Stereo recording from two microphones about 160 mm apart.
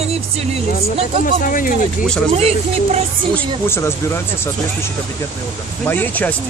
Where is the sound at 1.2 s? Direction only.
60° left (ahead or behind).